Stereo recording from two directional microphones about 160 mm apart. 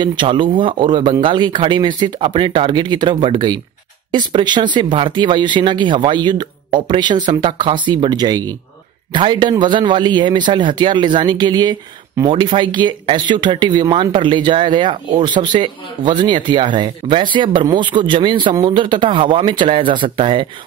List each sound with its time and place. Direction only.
0.0 s speech: 30° right (ahead or behind)